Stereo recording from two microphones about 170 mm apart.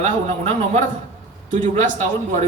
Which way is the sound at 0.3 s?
40° right (ahead or behind).